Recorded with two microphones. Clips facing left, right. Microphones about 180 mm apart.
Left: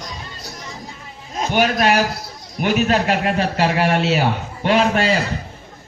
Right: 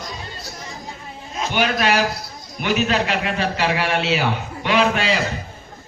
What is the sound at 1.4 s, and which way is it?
A man's voice, 45° left (ahead or behind).